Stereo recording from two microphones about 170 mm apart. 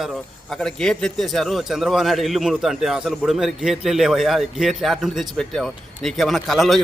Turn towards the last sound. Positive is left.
turn(degrees=0)  # may be behind; listen again after turning